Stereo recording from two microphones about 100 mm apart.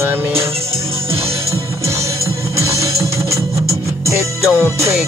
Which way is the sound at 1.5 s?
30° right (ahead or behind).